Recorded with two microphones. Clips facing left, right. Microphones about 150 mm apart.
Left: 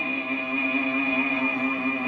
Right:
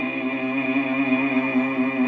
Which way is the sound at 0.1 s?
45° right (ahead or behind).